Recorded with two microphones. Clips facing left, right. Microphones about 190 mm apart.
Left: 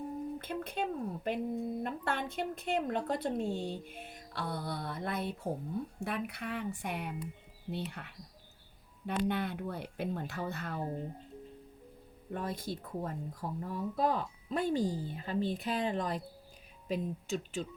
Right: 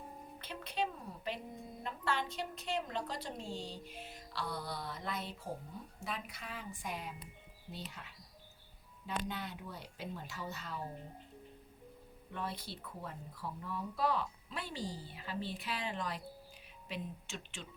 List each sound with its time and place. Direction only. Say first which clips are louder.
0.3 s a sound: left 3 dB; 50° left (ahead or behind)
1.8 s a woman's voice: left 3 dB; 55° left (ahead or behind)
12.3 s speech: left 6 dB; 45° left (ahead or behind)